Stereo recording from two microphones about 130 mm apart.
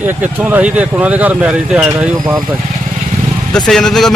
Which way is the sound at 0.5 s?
10° right (ahead or behind).